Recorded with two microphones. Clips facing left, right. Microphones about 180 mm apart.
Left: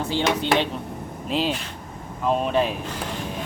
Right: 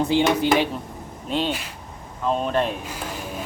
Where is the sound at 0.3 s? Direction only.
5° right (ahead or behind).